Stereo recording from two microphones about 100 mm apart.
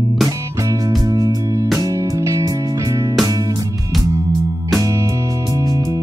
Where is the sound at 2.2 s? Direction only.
30° right (ahead or behind).